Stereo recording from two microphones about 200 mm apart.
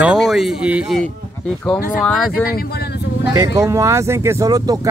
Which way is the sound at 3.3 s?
15° right (ahead or behind).